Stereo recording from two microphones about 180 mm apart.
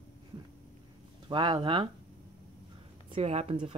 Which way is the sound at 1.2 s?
25° right (ahead or behind).